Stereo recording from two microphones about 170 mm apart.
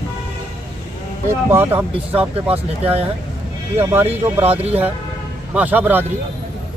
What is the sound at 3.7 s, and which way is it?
Speech, 15° right (ahead or behind).